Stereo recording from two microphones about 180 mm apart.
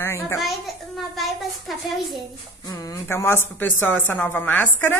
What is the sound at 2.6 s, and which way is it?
A woman's voice, 20° left (ahead or behind).